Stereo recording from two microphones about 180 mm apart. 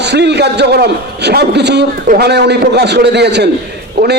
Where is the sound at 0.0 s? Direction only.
70° right (ahead or behind).